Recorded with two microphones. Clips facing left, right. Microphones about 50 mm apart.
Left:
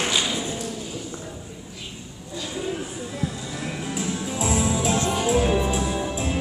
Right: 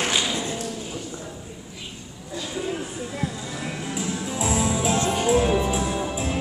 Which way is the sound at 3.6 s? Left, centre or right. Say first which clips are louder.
Left 1 dB; centre.